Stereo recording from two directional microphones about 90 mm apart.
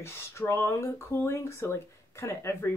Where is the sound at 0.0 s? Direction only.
30° left (ahead or behind).